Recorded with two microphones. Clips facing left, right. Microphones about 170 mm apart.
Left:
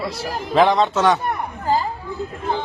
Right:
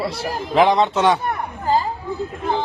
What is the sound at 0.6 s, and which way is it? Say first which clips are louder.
Speech: even; 15° right (ahead or behind).